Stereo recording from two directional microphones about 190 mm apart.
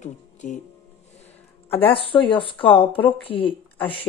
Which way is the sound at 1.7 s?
30° left (ahead or behind).